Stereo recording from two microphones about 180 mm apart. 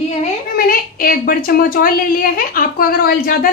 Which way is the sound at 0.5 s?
55° left (ahead or behind).